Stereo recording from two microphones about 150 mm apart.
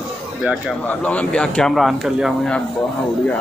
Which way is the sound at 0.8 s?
10° left (ahead or behind).